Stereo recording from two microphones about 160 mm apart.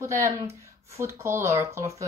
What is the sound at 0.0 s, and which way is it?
A woman's voice, 20° right (ahead or behind).